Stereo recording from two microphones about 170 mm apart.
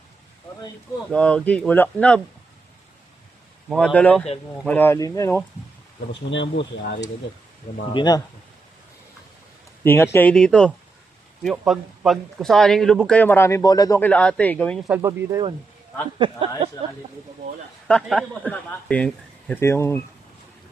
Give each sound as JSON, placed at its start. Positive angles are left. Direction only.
{"t": 1.1, "sound": "speech", "side_deg": 5}
{"t": 3.7, "sound": "speech", "side_deg": 5}
{"t": 4.8, "sound": "speech", "side_deg": 15}
{"t": 6.1, "sound": "speech", "side_deg": 90}
{"t": 7.9, "sound": "speech", "side_deg": 25}
{"t": 9.8, "sound": "speech", "side_deg": 15}
{"t": 14.0, "sound": "speech", "side_deg": 5}
{"t": 14.8, "sound": "speech", "side_deg": -10}
{"t": 16.1, "sound": "speech", "side_deg": -30}
{"t": 17.8, "sound": "speech", "side_deg": 5}